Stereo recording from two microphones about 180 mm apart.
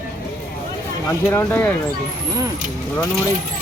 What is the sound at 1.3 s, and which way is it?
Speech, 10° left (ahead or behind).